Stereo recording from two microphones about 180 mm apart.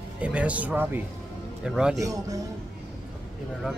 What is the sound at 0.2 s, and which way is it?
Speech, 5° right (ahead or behind).